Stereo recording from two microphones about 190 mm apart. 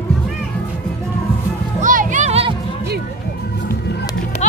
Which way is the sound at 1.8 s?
45° right (ahead or behind).